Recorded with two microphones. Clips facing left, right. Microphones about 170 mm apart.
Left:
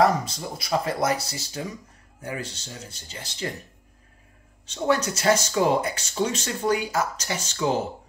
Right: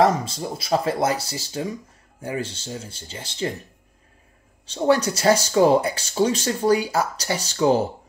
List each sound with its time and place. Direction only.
0.0 s speech: 25° right (ahead or behind)
4.6 s speech: 30° right (ahead or behind)